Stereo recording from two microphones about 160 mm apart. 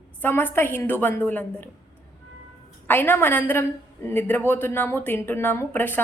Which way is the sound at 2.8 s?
10° left (ahead or behind).